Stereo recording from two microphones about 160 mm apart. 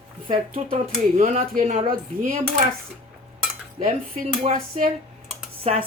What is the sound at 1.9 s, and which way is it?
Dishes, 65° right (ahead or behind).